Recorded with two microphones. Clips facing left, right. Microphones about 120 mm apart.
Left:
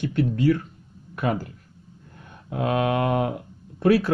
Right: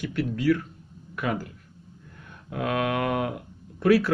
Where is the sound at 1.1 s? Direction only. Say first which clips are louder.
Left 3 dB; 30° left (ahead or behind).